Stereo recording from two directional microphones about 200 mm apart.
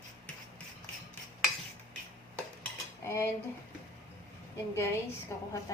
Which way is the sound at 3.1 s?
10° left (ahead or behind).